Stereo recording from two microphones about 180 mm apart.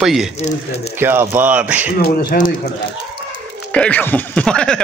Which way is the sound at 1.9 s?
60° left (ahead or behind).